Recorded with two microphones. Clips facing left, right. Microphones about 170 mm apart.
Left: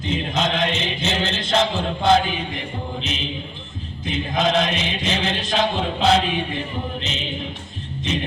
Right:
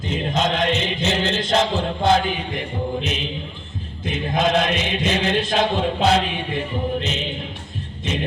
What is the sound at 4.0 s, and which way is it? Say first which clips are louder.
Chant: right 1 dB; 50° right (ahead or behind).